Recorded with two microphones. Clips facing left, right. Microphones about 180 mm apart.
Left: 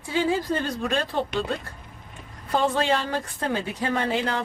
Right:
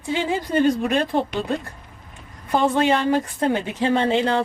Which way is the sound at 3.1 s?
20° right (ahead or behind).